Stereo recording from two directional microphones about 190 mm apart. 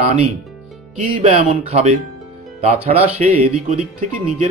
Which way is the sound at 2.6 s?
35° right (ahead or behind).